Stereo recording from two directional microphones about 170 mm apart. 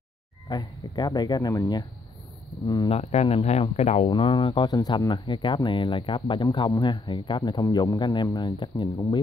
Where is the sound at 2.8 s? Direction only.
35° left (ahead or behind).